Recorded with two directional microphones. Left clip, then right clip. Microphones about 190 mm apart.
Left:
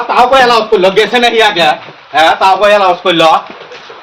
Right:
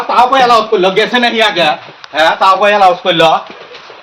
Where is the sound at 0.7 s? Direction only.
Centre (ahead or behind).